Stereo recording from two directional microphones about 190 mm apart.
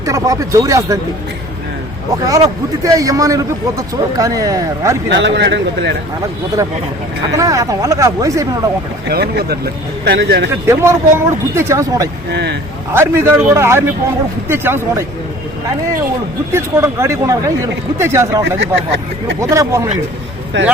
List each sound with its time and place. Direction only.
0.0 s speech: 20° right (ahead or behind)
2.2 s a man's voice: 20° right (ahead or behind)
5.0 s speech: 70° right (ahead or behind)
7.3 s a man's voice: 15° right (ahead or behind)
9.0 s speech: 55° right (ahead or behind)
10.7 s a man's voice: 15° right (ahead or behind)
12.3 s speech: 60° right (ahead or behind)
12.9 s a man's voice: 10° right (ahead or behind)
16.5 s a man's voice: 15° right (ahead or behind)
18.6 s speech: 70° right (ahead or behind)
19.4 s a man's voice: 15° right (ahead or behind)
20.5 s speech: 70° right (ahead or behind)